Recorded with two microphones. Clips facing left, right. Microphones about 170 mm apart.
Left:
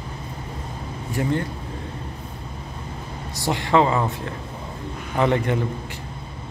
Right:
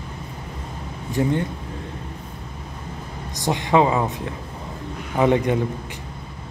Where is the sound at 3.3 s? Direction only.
20° right (ahead or behind).